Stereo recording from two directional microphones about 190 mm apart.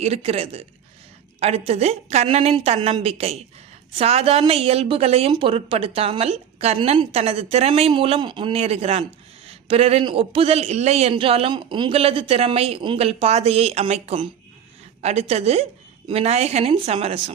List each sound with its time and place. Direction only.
0.0 s a man's voice: 35° right (ahead or behind)